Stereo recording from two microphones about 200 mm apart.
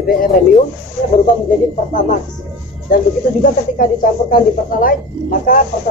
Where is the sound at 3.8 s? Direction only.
45° left (ahead or behind).